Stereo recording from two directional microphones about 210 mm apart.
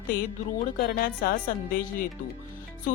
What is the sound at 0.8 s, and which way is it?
Speech, 45° left (ahead or behind).